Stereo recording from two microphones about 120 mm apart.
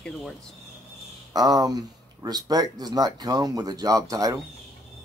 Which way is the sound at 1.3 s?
30° right (ahead or behind).